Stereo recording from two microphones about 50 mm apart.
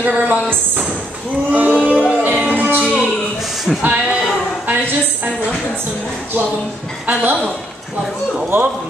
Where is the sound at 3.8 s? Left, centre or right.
Right.